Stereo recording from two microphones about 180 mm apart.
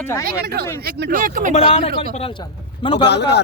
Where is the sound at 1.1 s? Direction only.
50° right (ahead or behind).